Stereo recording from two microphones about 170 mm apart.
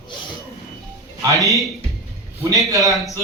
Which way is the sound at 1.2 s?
20° right (ahead or behind).